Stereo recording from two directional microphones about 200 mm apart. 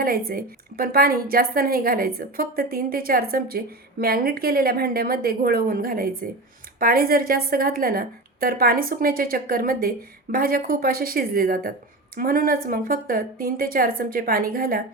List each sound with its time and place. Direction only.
0.0 s a woman's voice: 45° right (ahead or behind)